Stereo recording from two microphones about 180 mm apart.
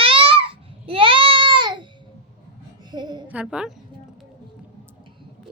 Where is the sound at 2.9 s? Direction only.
25° right (ahead or behind).